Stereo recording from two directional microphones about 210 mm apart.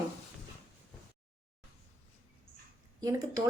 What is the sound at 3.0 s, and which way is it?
Speech, 15° right (ahead or behind).